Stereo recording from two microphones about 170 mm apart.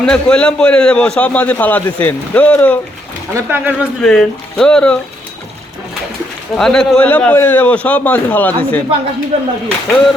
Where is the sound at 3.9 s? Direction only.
5° left (ahead or behind).